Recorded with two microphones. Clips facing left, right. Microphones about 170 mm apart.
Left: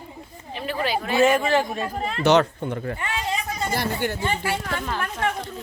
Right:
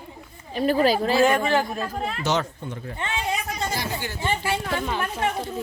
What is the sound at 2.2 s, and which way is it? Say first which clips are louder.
Speech: left 10 dB; 60° left (ahead or behind).